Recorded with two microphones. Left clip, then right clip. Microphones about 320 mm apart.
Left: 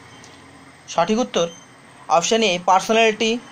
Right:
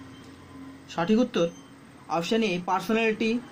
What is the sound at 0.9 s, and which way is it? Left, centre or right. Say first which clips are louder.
Speech: left 6 dB; centre.